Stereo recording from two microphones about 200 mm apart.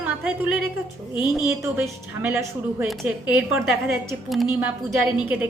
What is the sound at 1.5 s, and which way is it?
A woman's voice, 15° right (ahead or behind).